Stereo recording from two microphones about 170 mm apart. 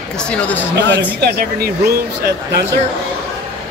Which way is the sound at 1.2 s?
65° right (ahead or behind).